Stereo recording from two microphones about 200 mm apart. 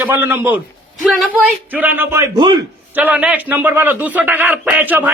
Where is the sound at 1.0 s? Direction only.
Centre (ahead or behind); by 2.5 s 20° right (ahead or behind).